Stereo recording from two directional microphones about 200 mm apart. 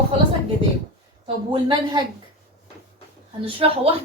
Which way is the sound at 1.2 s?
25° right (ahead or behind).